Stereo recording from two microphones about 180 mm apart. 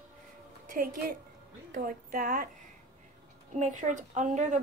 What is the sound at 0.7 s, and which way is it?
A woman's voice, 50° right (ahead or behind).